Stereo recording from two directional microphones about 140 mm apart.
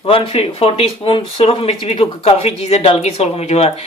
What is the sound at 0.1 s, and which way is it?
Speech, 40° left (ahead or behind).